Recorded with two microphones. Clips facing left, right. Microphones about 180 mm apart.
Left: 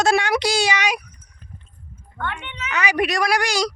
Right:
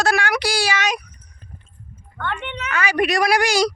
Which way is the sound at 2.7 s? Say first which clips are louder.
Even; 20° left (ahead or behind).